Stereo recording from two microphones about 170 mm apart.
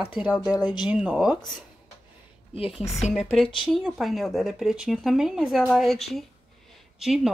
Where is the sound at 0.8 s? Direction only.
5° right (ahead or behind).